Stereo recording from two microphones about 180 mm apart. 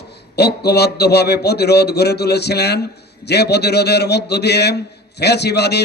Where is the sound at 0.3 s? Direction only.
65° left (ahead or behind).